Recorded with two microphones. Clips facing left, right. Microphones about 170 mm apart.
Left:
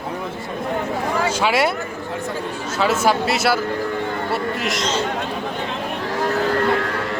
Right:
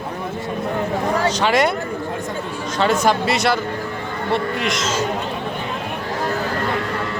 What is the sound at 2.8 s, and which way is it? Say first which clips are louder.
Speech: right 1 dB; 5° left (ahead or behind).